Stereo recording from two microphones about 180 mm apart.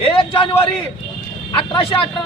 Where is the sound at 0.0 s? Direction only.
30° left (ahead or behind).